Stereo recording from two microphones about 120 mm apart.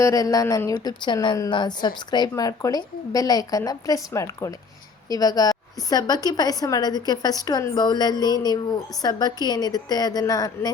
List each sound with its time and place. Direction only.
0.0 s a woman's voice: 30° left (ahead or behind)